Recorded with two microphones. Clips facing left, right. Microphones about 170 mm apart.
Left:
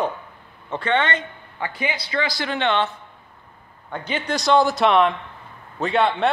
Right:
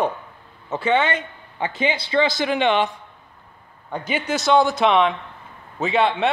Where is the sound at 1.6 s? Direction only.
25° right (ahead or behind).